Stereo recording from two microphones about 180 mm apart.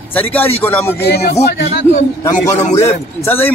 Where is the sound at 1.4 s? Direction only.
70° left (ahead or behind).